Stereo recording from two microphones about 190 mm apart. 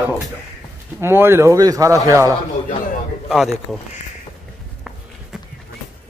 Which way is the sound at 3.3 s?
Centre (ahead or behind).